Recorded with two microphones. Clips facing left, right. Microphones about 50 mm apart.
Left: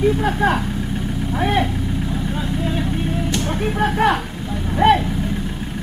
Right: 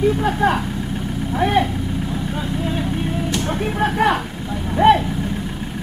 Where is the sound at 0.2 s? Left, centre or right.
Centre.